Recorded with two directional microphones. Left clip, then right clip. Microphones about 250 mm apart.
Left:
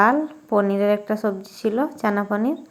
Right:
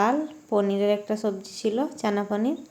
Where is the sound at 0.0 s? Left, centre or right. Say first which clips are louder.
Left 6 dB; centre.